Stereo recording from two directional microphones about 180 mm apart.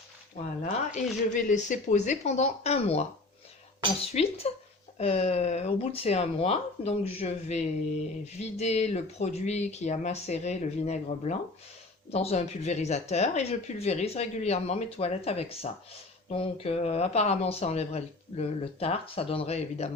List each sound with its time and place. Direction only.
0.9 s speech: 45° left (ahead or behind)
4.0 s speech: 35° left (ahead or behind)